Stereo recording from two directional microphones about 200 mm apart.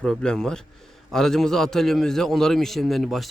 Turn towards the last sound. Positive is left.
turn(degrees=0)  # may be behind; listen again after turning